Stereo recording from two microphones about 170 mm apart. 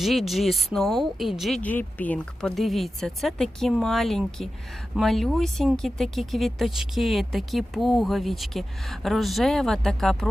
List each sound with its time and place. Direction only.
0.0 s speech: centre (ahead or behind)